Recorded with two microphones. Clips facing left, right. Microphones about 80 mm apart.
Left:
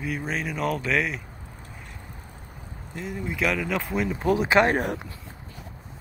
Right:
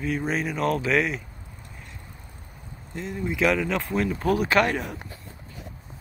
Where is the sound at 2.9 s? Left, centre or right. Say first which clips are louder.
Right 2 dB; centre.